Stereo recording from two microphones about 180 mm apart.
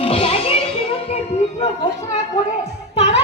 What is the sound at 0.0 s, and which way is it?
Music, 30° left (ahead or behind).